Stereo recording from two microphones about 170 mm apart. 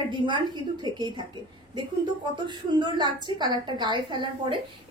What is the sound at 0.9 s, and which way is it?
Speech, 25° right (ahead or behind).